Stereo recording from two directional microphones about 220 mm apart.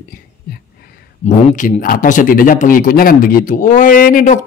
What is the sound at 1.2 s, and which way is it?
Speech, 35° left (ahead or behind).